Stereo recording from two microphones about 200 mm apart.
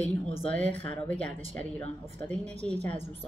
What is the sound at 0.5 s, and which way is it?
A woman's voice, 5° left (ahead or behind).